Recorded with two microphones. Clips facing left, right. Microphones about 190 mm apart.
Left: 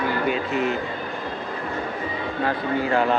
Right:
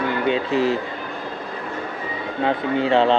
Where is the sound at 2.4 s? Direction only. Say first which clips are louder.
Right 4 dB; 25° right (ahead or behind).